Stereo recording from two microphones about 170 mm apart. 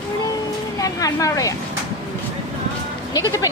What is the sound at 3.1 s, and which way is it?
Speech, 20° left (ahead or behind).